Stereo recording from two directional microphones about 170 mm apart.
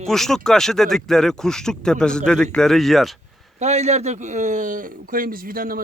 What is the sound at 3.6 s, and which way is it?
Speech, 40° right (ahead or behind).